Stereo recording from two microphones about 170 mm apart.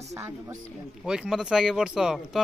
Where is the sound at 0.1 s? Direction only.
20° right (ahead or behind).